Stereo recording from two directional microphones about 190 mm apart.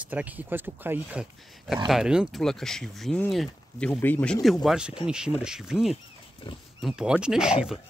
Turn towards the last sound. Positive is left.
turn(degrees=-5)  # may be behind; listen again after turning